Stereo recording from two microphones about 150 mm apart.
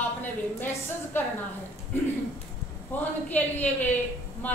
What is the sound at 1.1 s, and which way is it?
Speech, 15° left (ahead or behind).